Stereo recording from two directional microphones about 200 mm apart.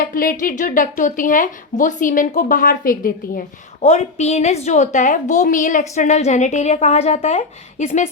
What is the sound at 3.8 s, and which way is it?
A woman's voice, 35° left (ahead or behind).